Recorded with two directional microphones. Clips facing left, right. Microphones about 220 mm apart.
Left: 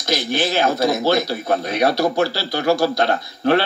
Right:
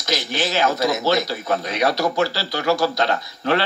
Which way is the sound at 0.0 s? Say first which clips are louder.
Left 3 dB; 55° left (ahead or behind).